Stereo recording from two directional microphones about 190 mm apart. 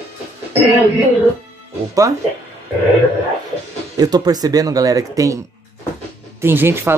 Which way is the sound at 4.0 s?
20° right (ahead or behind).